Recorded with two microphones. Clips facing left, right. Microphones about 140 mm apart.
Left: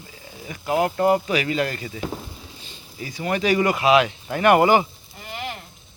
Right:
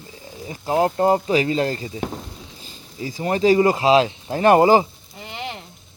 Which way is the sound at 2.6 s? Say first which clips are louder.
Right 5 dB; 40° right (ahead or behind).